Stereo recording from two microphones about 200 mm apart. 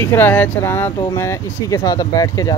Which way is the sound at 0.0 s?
10° left (ahead or behind).